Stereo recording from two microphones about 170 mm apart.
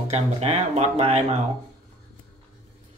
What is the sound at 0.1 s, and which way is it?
Speech, 40° right (ahead or behind).